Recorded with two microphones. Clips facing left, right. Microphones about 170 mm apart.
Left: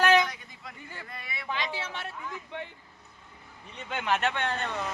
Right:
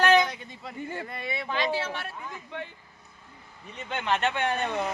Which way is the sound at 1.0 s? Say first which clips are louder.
Right 8 dB; 25° right (ahead or behind).